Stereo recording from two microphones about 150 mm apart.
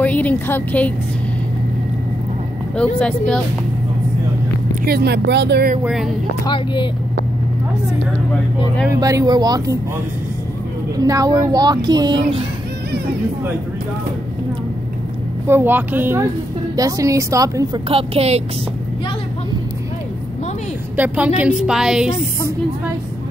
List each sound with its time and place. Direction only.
0.0 s a woman's voice: 10° left (ahead or behind)
3.0 s speech: 5° left (ahead or behind)
4.8 s speech: 90° right
5.9 s a woman's voice: centre (ahead or behind)
6.4 s speech: 30° left (ahead or behind)
8.8 s speech: 20° right (ahead or behind)
11.0 s speech: 25° right (ahead or behind)
15.4 s speech: 15° right (ahead or behind)
17.8 s a woman's voice: 40° right (ahead or behind)
20.9 s a woman's voice: 10° right (ahead or behind)